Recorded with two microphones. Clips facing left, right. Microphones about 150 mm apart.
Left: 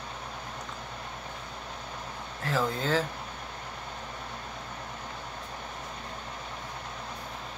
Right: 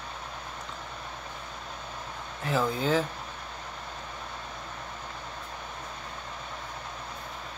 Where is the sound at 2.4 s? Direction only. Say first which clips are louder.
Right 2 dB; 15° right (ahead or behind).